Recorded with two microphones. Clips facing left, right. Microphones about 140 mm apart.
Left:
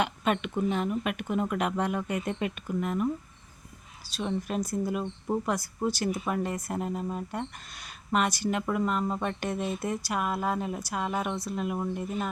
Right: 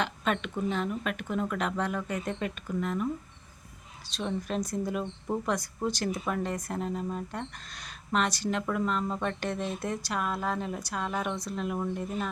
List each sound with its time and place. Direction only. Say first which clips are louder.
0.0 s speech: left 2 dB; 10° left (ahead or behind)